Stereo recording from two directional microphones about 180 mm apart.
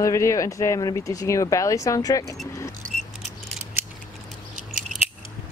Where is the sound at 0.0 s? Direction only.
15° left (ahead or behind).